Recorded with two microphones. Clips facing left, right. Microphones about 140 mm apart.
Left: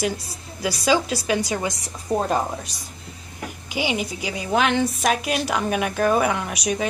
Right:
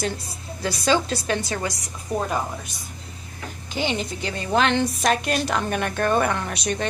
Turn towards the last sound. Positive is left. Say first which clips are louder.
# left 2 dB
turn(degrees=10)  # may be behind; listen again after turning